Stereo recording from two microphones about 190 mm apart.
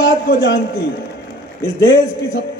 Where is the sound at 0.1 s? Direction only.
70° left (ahead or behind).